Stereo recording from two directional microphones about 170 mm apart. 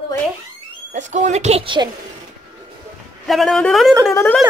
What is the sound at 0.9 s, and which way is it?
Speech, 40° right (ahead or behind).